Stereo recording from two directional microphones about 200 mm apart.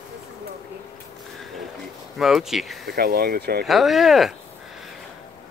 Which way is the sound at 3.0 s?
50° right (ahead or behind).